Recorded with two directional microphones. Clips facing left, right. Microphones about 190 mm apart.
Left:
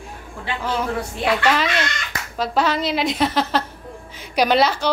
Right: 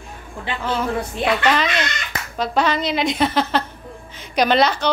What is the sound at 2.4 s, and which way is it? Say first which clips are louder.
A woman's voice: even; 5° left (ahead or behind).